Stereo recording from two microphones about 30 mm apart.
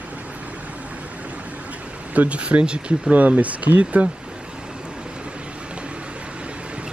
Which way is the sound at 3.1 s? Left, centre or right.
Right.